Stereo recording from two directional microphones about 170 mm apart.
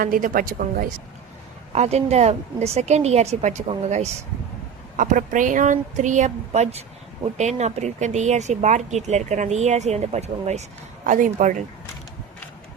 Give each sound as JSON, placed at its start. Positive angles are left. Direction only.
{"t": 0.0, "sound": "speech", "side_deg": -55}
{"t": 1.7, "sound": "a woman's voice", "side_deg": -40}